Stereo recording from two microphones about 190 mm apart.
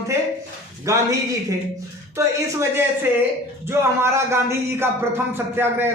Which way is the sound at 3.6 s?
15° right (ahead or behind).